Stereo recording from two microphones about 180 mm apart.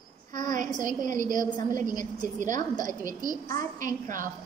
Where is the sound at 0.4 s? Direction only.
45° right (ahead or behind).